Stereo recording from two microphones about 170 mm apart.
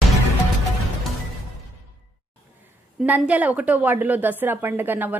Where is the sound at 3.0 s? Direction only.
10° right (ahead or behind).